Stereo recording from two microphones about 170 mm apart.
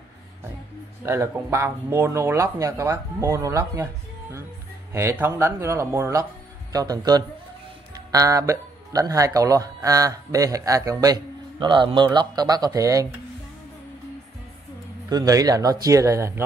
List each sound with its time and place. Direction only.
1.0 s speech: 15° right (ahead or behind)
15.0 s speech: 20° right (ahead or behind)